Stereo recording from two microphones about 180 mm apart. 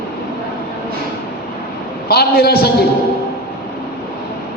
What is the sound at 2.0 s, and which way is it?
Speech, 60° left (ahead or behind).